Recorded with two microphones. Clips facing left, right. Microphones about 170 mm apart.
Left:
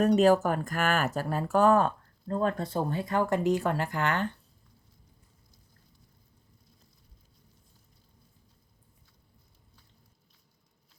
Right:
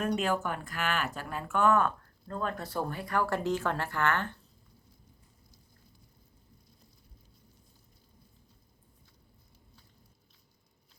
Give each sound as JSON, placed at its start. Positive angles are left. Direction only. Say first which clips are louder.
{"t": 0.0, "sound": "speech", "louder": "left 9 dB", "side_deg": 40}